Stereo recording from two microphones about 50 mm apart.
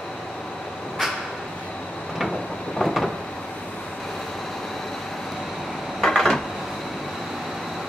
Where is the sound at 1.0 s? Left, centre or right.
Centre.